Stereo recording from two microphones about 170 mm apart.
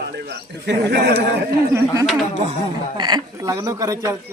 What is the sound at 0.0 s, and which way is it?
A man's voice, 70° right (ahead or behind).